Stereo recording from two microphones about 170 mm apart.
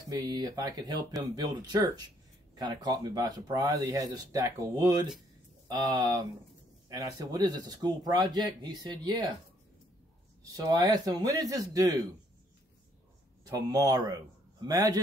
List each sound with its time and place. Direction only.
0.1 s speech: 25° right (ahead or behind)
10.4 s speech: 20° right (ahead or behind)
13.4 s speech: 20° right (ahead or behind)